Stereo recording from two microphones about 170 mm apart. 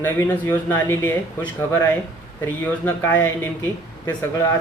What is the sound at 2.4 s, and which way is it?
Speech, 15° left (ahead or behind).